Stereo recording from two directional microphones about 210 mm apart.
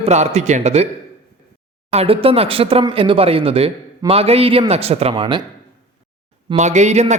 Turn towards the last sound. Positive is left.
turn(degrees=-35)  # may be behind; listen again after turning